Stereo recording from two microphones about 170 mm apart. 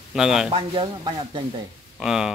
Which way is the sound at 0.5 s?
30° right (ahead or behind).